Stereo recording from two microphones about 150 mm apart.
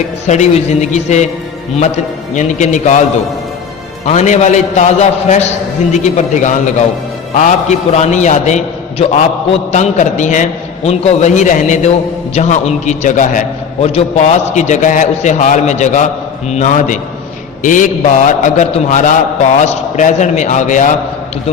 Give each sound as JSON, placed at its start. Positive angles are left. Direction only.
{"t": 0.3, "sound": "a man's voice", "side_deg": 50}
{"t": 2.3, "sound": "a man's voice", "side_deg": 55}
{"t": 4.0, "sound": "a man's voice", "side_deg": 50}